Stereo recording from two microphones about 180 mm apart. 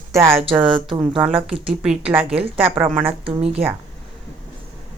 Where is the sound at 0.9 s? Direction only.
30° right (ahead or behind).